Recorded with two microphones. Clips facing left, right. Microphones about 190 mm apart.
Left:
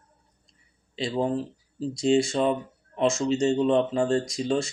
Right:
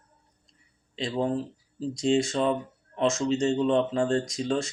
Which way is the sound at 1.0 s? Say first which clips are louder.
Left 2 dB; 30° left (ahead or behind).